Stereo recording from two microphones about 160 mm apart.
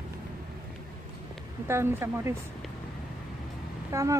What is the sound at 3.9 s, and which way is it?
Speech, 20° right (ahead or behind).